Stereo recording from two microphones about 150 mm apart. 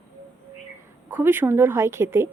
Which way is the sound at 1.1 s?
15° right (ahead or behind).